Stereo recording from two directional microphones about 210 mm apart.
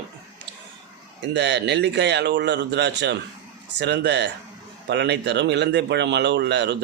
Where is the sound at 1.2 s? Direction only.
55° right (ahead or behind).